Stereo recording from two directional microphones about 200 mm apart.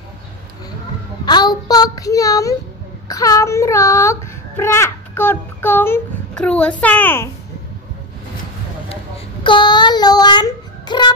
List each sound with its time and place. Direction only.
1.2 s child singing: 20° left (ahead or behind)
3.1 s a child's voice: 15° left (ahead or behind)
9.4 s speech: 25° left (ahead or behind)